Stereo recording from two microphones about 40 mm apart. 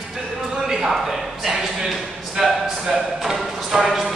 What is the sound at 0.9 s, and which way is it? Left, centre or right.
Speech, centre.